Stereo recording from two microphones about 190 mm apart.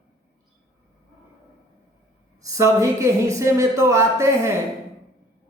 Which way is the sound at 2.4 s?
15° right (ahead or behind).